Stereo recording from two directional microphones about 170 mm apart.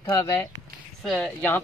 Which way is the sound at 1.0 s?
Centre (ahead or behind).